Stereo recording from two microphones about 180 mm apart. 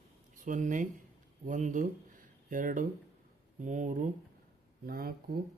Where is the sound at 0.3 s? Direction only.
45° right (ahead or behind).